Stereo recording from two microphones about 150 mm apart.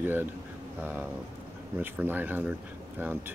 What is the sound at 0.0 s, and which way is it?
Speech, 15° right (ahead or behind).